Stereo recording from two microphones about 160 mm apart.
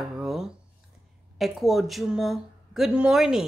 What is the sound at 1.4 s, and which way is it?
Speech, centre (ahead or behind).